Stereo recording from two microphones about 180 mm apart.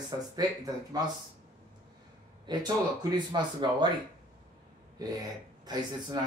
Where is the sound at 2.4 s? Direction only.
25° right (ahead or behind).